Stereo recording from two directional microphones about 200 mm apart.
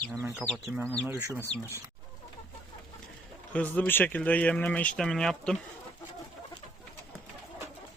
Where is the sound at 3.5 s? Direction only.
5° left (ahead or behind).